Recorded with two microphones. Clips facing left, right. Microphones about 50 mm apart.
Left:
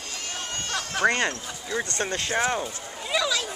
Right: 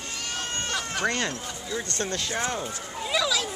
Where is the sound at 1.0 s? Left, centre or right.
Left.